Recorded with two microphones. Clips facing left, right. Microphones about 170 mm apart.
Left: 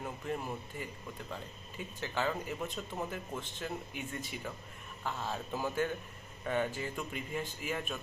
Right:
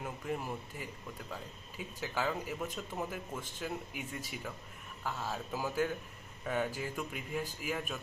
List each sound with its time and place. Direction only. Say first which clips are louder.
0.0 s speech: even; 5° right (ahead or behind)